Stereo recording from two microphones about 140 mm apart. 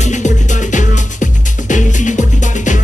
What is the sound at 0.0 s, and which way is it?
Music, 60° left (ahead or behind).